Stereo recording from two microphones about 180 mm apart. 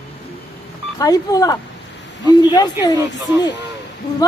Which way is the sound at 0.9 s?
20° left (ahead or behind).